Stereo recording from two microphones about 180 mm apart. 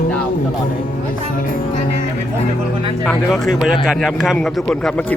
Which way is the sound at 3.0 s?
Centre (ahead or behind).